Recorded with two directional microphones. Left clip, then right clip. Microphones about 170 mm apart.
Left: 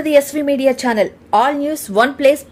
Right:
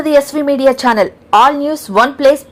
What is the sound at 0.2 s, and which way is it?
A woman's voice, centre (ahead or behind).